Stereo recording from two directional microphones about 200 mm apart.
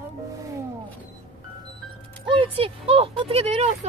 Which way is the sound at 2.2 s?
25° right (ahead or behind).